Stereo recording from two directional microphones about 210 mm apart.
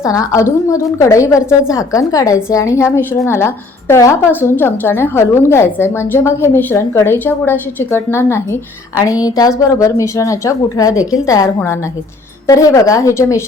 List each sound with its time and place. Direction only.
0.0 s a woman's voice: 15° left (ahead or behind)